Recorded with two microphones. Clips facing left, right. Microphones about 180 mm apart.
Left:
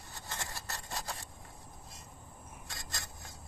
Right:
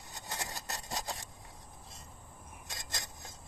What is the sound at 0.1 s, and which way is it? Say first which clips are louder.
Vehicle: right 2 dB; 20° right (ahead or behind).